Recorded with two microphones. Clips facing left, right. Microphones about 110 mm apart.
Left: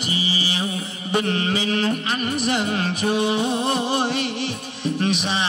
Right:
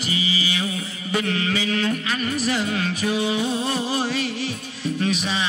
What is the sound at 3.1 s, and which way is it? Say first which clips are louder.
Music: left 3 dB; 55° left (ahead or behind).